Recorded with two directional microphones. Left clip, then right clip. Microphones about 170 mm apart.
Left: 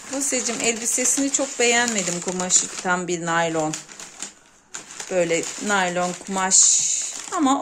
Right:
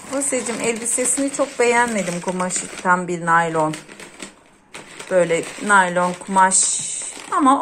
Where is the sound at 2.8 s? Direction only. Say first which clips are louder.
Right 5 dB; 40° left (ahead or behind).